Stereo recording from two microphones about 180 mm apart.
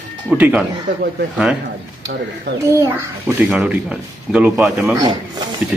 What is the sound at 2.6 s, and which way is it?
A child's voice, 15° right (ahead or behind).